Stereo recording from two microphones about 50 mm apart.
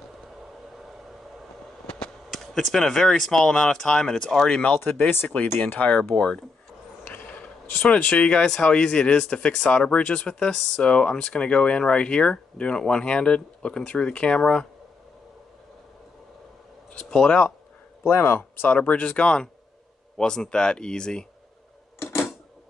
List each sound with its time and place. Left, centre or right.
2.3 s speech: centre
4.5 s speech: left
6.1 s speech: centre
7.2 s whispering: left
7.8 s speech: left
16.9 s a sound: centre
18.0 s speech: left
18.7 s speech: left